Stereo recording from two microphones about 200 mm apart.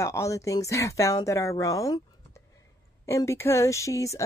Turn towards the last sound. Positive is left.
turn(degrees=15)  # may be behind; listen again after turning